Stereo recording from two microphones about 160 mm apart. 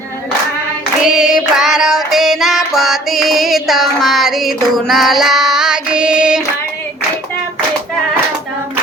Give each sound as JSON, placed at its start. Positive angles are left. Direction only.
{"t": 1.0, "sound": "child singing", "side_deg": -5}